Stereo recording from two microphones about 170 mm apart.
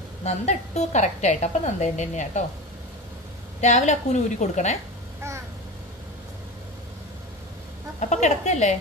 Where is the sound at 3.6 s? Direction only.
45° left (ahead or behind).